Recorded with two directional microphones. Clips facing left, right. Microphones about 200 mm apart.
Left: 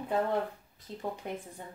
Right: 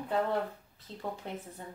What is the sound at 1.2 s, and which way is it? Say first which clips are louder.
Speech: left 2 dB; 15° left (ahead or behind).